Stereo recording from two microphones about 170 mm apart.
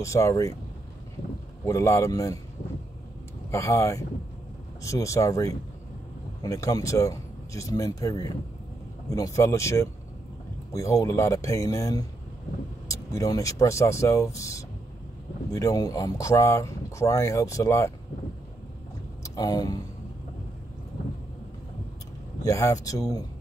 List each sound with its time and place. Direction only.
0.0 s speech: 15° left (ahead or behind)
1.7 s speech: 15° left (ahead or behind)
3.5 s speech: 15° left (ahead or behind)
19.2 s speech: 20° left (ahead or behind)
22.4 s speech: 20° left (ahead or behind)